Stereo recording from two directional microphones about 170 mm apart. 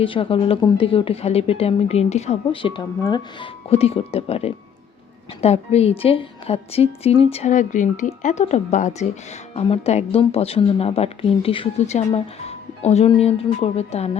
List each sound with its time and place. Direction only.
0.0 s speech: 30° left (ahead or behind)
3.7 s speech: 35° left (ahead or behind)